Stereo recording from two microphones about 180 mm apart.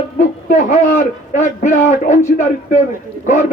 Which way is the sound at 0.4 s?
45° left (ahead or behind).